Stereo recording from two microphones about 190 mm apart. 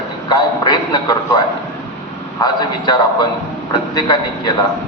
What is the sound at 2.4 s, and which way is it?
A man's voice, 20° left (ahead or behind).